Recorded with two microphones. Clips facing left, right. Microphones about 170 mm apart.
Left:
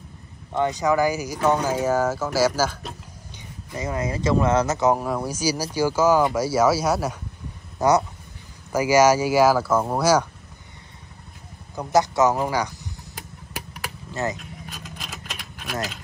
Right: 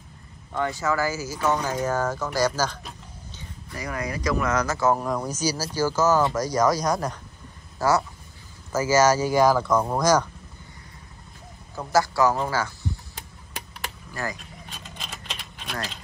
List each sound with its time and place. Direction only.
0.5 s speech: 20° left (ahead or behind)
3.7 s speech: 25° left (ahead or behind)
5.0 s speech: 10° left (ahead or behind)
7.8 s speech: 20° left (ahead or behind)
11.7 s speech: 20° left (ahead or behind)
13.5 s a sound: 5° left (ahead or behind)
14.1 s speech: 20° left (ahead or behind)
14.7 s vehicle: 5° left (ahead or behind)